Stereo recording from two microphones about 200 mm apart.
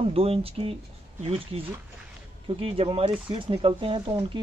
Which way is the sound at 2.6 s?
25° right (ahead or behind).